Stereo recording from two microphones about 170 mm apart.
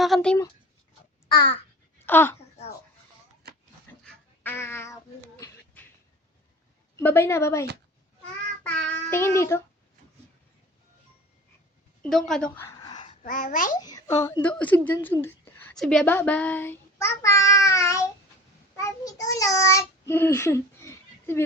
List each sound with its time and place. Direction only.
0.0 s a sound: 5° left (ahead or behind)
1.3 s babbling: 25° left (ahead or behind)
2.0 s speech: 15° left (ahead or behind)
4.0 s a sound: 10° left (ahead or behind)
6.9 s child singing: 15° left (ahead or behind)
12.0 s a woman's voice: 5° left (ahead or behind)
12.5 s a sound: 20° left (ahead or behind)
13.2 s a child's voice: 55° left (ahead or behind)
13.8 s speech: 20° left (ahead or behind)
15.7 s child singing: centre (ahead or behind)